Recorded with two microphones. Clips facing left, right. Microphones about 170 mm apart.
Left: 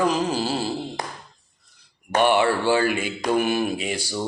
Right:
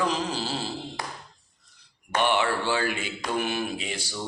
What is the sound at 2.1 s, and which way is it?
Mantra, 45° left (ahead or behind).